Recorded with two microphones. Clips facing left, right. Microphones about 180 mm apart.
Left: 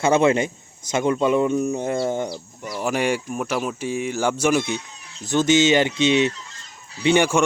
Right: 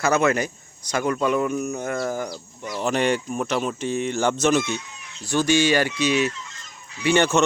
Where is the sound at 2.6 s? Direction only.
10° left (ahead or behind); by 6.5 s 30° left (ahead or behind).